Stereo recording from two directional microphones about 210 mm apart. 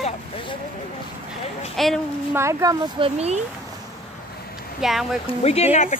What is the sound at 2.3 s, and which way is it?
Speech, 15° right (ahead or behind).